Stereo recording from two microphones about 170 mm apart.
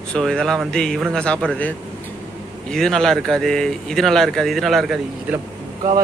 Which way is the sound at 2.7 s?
5° left (ahead or behind).